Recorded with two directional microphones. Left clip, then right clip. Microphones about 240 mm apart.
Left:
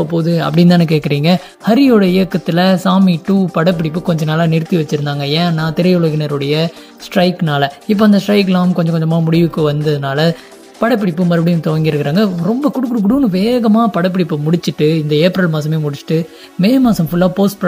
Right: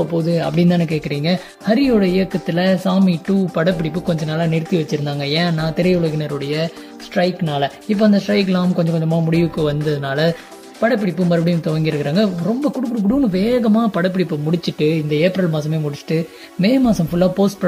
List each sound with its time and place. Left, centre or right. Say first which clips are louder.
0.1 s speech: left 3 dB; centre